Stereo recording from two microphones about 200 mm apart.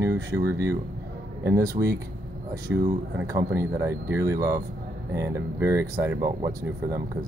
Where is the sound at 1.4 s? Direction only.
15° right (ahead or behind).